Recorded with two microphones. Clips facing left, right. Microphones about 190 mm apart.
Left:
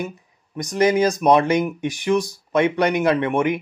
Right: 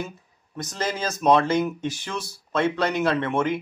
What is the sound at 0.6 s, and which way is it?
Speech, 15° left (ahead or behind).